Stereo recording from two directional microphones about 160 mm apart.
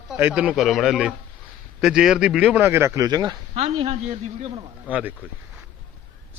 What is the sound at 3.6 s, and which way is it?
Speech, 40° right (ahead or behind).